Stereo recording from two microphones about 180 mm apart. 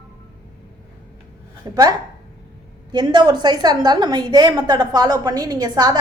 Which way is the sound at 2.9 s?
25° right (ahead or behind).